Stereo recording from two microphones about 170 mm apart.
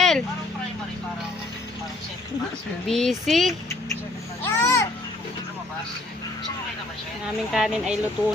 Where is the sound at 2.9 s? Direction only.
Centre (ahead or behind).